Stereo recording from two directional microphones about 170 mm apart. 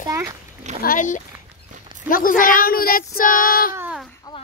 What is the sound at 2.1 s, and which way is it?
Child singing, 55° left (ahead or behind).